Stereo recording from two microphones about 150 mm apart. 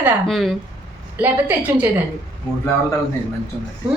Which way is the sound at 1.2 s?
10° right (ahead or behind).